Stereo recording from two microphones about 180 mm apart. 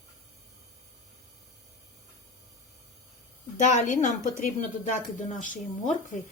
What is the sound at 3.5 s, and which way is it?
Speech, 45° left (ahead or behind).